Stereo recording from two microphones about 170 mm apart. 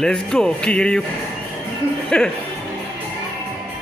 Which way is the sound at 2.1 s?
5° left (ahead or behind).